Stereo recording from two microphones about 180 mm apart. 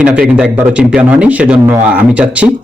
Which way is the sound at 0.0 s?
5° right (ahead or behind).